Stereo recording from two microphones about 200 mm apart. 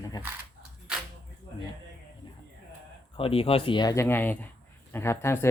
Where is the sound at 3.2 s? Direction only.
30° left (ahead or behind); by 5.5 s 15° left (ahead or behind).